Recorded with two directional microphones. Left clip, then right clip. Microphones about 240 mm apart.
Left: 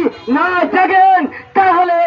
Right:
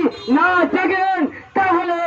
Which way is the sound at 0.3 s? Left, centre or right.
Left.